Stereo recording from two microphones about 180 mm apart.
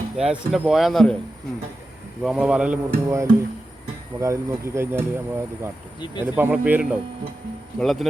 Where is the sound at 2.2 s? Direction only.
5° right (ahead or behind).